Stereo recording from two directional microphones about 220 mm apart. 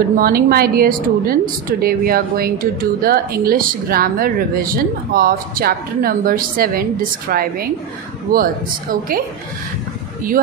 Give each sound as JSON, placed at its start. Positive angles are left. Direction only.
{"t": 0.1, "sound": "a woman's voice", "side_deg": -45}